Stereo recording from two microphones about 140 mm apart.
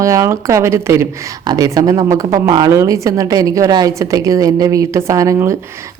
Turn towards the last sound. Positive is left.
turn(degrees=-20)  # may be behind; listen again after turning